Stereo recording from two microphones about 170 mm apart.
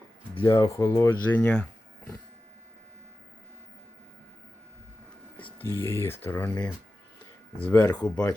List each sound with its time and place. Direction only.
0.4 s speech: 20° left (ahead or behind)
5.4 s a sound: 10° left (ahead or behind)
5.8 s speech: 15° left (ahead or behind)
7.7 s speech: 20° left (ahead or behind)
7.9 s speech: 5° left (ahead or behind)